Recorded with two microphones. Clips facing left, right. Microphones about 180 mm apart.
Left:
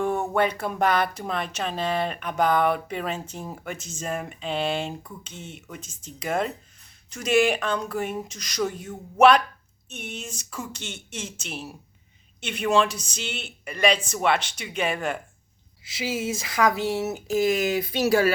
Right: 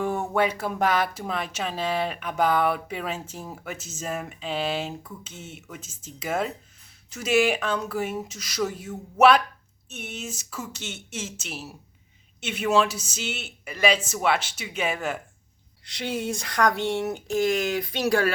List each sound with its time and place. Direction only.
0.3 s speech: 5° right (ahead or behind)